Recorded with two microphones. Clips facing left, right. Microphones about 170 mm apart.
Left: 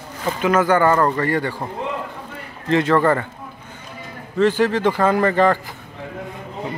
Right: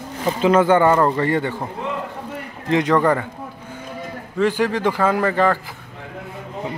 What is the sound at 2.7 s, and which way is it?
Speech, 15° right (ahead or behind).